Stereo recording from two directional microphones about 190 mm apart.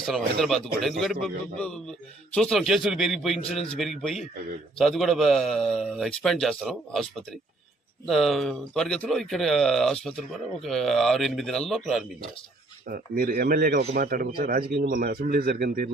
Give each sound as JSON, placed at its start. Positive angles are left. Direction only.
{"t": 0.0, "sound": "a man's voice", "side_deg": 0}
{"t": 12.9, "sound": "speech", "side_deg": -50}